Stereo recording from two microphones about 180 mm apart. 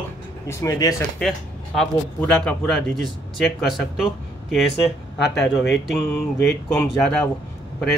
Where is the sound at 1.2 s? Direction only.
Centre (ahead or behind).